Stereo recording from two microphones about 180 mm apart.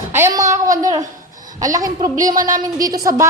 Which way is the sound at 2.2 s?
45° right (ahead or behind).